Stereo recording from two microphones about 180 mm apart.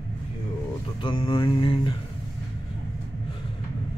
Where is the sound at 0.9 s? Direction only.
25° left (ahead or behind).